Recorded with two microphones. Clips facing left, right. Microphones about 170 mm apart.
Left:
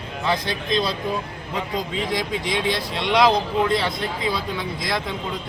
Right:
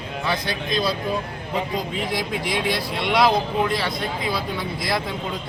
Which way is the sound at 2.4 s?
25° left (ahead or behind).